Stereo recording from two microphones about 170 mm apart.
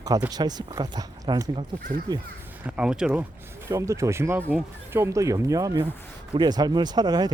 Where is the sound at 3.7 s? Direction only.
20° right (ahead or behind).